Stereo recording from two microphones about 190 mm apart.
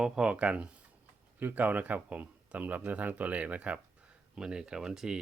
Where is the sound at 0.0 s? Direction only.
5° right (ahead or behind).